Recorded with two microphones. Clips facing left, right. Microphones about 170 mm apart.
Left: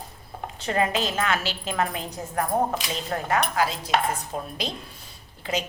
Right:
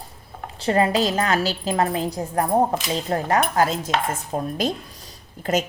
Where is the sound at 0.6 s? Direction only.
30° right (ahead or behind).